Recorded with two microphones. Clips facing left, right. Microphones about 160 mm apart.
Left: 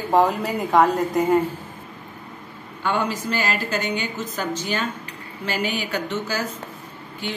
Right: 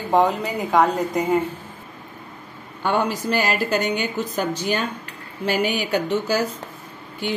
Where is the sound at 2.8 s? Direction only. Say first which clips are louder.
Right 2 dB; 60° right (ahead or behind).